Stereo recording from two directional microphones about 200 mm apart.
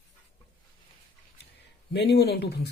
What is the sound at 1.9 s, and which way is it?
Speech, 55° left (ahead or behind).